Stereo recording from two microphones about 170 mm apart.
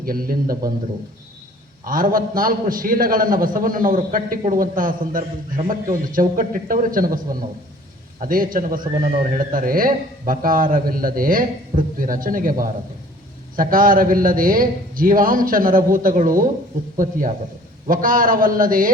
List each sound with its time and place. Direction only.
0.0 s a man's voice: 60° right (ahead or behind)
1.8 s a man's voice: 55° right (ahead or behind)
8.2 s a man's voice: 55° right (ahead or behind)